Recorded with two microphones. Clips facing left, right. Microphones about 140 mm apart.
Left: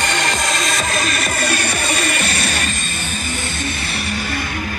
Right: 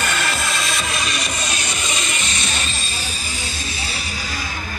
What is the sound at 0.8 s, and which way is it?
Music, 50° left (ahead or behind).